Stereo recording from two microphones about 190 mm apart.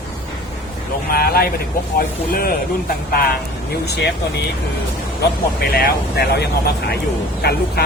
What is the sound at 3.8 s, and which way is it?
Speech, 60° left (ahead or behind).